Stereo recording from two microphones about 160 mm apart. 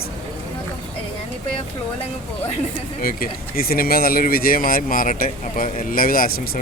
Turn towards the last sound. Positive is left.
turn(degrees=65)  # may be behind; listen again after turning